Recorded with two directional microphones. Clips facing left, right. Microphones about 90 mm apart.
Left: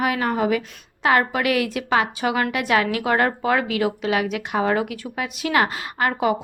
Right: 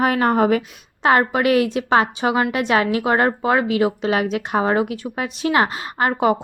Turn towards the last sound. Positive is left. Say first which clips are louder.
# right 3 dB
turn(degrees=-30)  # may be behind; listen again after turning